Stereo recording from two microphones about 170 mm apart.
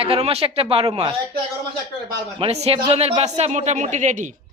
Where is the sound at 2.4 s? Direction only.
35° right (ahead or behind).